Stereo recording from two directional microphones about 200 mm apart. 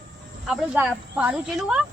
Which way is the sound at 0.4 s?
5° right (ahead or behind).